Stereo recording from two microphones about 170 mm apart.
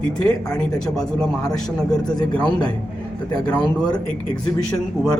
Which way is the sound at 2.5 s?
25° left (ahead or behind).